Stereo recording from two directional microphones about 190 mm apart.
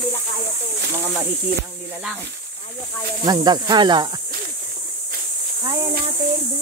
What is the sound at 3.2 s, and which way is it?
Speech, 20° right (ahead or behind).